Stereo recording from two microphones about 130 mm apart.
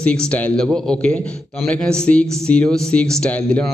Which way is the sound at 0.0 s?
10° left (ahead or behind).